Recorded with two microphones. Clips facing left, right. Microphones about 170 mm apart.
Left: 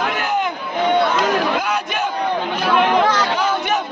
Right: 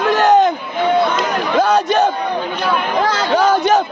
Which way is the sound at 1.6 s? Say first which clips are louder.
Right 8 dB; 35° right (ahead or behind).